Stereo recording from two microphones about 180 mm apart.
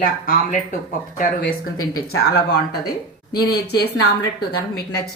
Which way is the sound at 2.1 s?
60° left (ahead or behind).